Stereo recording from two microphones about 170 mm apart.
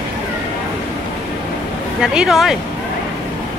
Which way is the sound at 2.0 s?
5° right (ahead or behind).